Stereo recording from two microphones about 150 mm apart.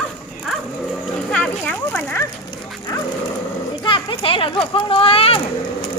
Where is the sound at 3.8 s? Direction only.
35° left (ahead or behind).